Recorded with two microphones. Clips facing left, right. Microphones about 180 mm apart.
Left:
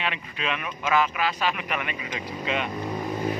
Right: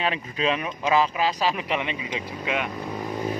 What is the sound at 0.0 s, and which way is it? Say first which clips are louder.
Speech: right 5 dB; 35° right (ahead or behind).